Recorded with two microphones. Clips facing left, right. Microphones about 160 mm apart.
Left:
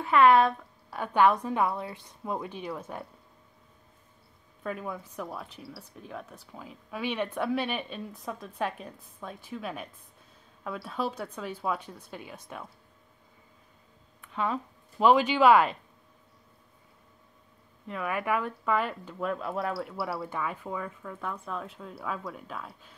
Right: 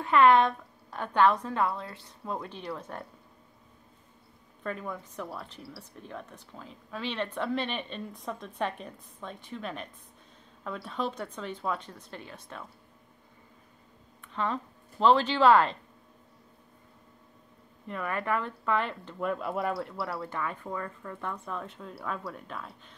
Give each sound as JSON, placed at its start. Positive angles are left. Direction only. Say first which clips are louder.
{"t": 0.0, "sound": "a woman's voice", "louder": "left 1 dB", "side_deg": 5}
{"t": 4.6, "sound": "a woman's voice", "louder": "left 1 dB", "side_deg": 5}
{"t": 14.2, "sound": "speech", "louder": "left 1 dB", "side_deg": 10}
{"t": 17.8, "sound": "speech", "louder": "left 1 dB", "side_deg": 5}